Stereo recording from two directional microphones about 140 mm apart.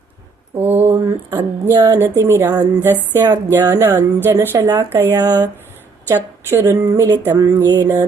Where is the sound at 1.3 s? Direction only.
20° right (ahead or behind).